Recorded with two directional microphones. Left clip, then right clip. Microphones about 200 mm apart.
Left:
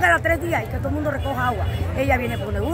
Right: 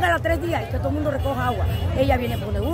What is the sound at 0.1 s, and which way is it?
Speech, 5° right (ahead or behind).